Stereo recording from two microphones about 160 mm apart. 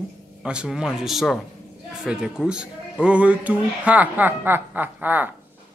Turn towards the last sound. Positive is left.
turn(degrees=-10)  # may be behind; listen again after turning